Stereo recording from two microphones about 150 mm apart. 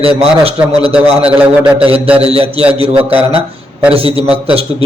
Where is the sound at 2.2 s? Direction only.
40° right (ahead or behind).